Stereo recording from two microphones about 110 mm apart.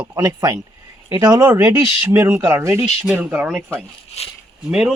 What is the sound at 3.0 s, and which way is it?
Speech, 10° right (ahead or behind).